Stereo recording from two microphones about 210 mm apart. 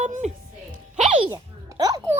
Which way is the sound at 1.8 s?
15° right (ahead or behind).